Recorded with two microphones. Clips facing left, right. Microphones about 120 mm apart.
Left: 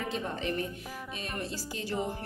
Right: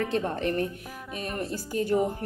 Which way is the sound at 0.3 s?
55° right (ahead or behind).